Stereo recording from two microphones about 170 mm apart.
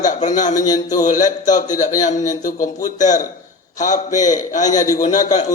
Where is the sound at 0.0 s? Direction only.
45° left (ahead or behind).